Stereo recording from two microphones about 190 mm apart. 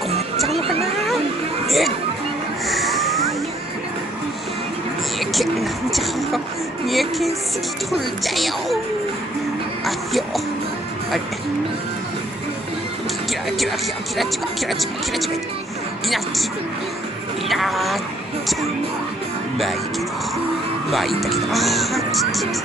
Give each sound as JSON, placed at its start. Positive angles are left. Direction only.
{"t": 0.5, "sound": "a sound", "side_deg": -30}
{"t": 1.7, "sound": "a sound", "side_deg": 0}
{"t": 5.2, "sound": "a sound", "side_deg": 0}
{"t": 6.9, "sound": "music", "side_deg": 0}
{"t": 8.4, "sound": "music", "side_deg": 0}
{"t": 9.8, "sound": "music", "side_deg": 0}
{"t": 13.5, "sound": "music", "side_deg": 0}
{"t": 14.7, "sound": "speech", "side_deg": 0}
{"t": 17.5, "sound": "speech", "side_deg": 0}
{"t": 20.9, "sound": "speech", "side_deg": 0}